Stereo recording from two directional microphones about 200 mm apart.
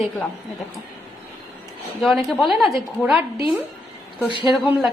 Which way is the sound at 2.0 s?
Centre (ahead or behind).